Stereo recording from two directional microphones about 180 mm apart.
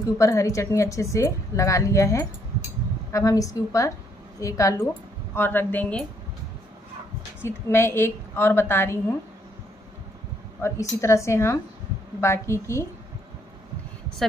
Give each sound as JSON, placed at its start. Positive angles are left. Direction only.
{"t": 0.2, "sound": "speech", "side_deg": 15}
{"t": 7.4, "sound": "speech", "side_deg": 15}
{"t": 10.6, "sound": "speech", "side_deg": 15}